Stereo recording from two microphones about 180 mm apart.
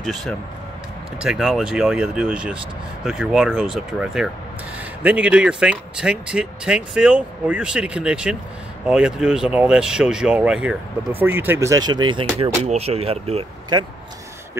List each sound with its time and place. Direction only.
0.0 s speech: centre (ahead or behind); by 13.8 s 30° right (ahead or behind)